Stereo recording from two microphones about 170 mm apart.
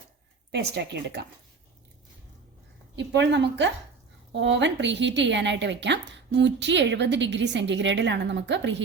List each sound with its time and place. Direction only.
0.5 s speech: 75° right (ahead or behind)
2.9 s a woman's voice: 90° right